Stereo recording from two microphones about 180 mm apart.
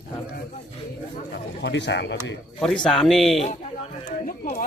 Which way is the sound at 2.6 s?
5° left (ahead or behind).